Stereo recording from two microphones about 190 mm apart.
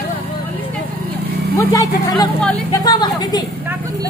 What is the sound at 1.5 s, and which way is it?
Speech, 20° left (ahead or behind).